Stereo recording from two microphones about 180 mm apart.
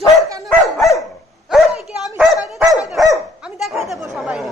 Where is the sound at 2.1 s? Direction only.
Centre (ahead or behind).